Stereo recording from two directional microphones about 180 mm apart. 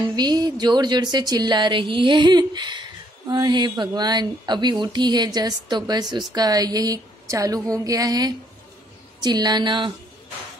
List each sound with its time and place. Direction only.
0.1 s speech: 20° right (ahead or behind)